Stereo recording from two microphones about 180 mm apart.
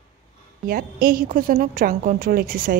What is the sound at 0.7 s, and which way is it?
A woman's voice, 55° right (ahead or behind).